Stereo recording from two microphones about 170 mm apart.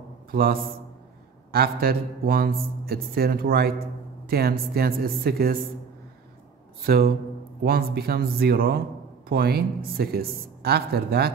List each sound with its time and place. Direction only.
0.3 s a man's voice: 60° right (ahead or behind)
6.9 s speech: 65° right (ahead or behind)